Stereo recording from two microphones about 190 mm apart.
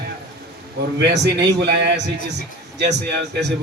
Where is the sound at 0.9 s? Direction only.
60° right (ahead or behind).